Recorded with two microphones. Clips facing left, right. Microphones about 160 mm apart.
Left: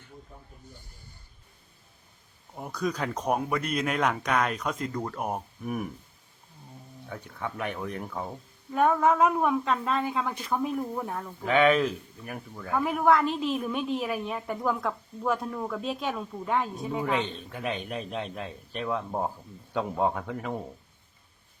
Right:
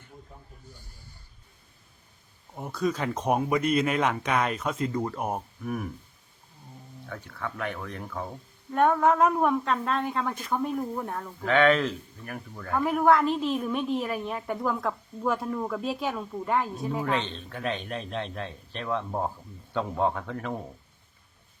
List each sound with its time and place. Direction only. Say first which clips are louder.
2.6 s speech: right 2 dB; centre (ahead or behind)
7.1 s speech: even; 15° left (ahead or behind)
8.7 s speech: right 1 dB; centre (ahead or behind)